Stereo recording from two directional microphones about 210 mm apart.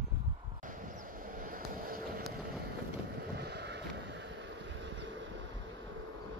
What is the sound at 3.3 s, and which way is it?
Vehicle, 50° right (ahead or behind).